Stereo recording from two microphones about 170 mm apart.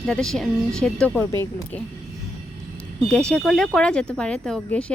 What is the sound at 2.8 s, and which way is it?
Speech, 5° left (ahead or behind).